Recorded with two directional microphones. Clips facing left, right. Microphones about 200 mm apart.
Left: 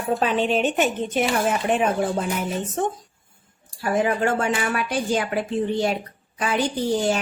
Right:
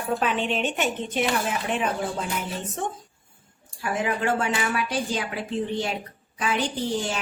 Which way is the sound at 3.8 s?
40° left (ahead or behind).